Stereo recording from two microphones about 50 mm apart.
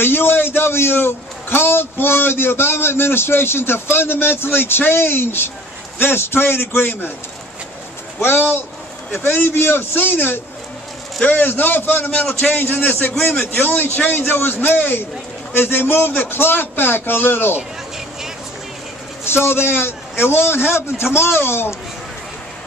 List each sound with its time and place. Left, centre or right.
0.0 s a man's voice: left
8.2 s a man's voice: left
12.4 s a man's voice: left
19.2 s a man's voice: left